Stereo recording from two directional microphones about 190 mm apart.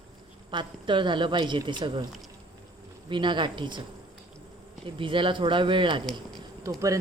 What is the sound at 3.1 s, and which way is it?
Speech, 25° right (ahead or behind).